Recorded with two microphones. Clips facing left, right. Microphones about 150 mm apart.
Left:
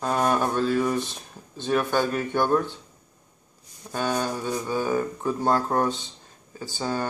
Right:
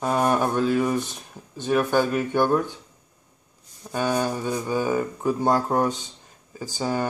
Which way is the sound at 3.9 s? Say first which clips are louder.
Right 2 dB; 10° right (ahead or behind).